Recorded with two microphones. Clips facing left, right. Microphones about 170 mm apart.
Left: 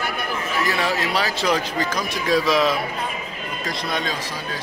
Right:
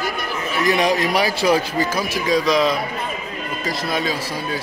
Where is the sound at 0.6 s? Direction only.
15° right (ahead or behind).